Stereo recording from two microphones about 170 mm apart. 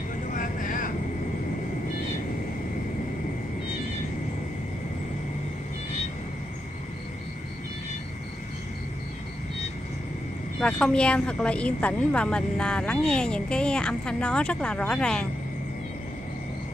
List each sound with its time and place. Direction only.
0.3 s vehicle: 50° left (ahead or behind)
10.6 s speech: 5° left (ahead or behind)